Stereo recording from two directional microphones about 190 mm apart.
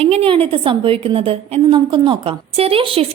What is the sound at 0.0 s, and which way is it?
A woman's voice, 30° right (ahead or behind).